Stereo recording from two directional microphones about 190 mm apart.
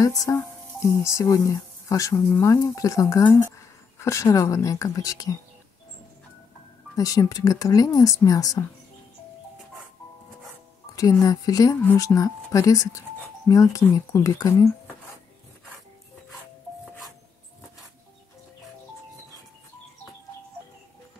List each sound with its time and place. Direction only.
0.0 s speech: 20° left (ahead or behind)
7.0 s speech: 20° left (ahead or behind)
11.0 s speech: 20° left (ahead or behind)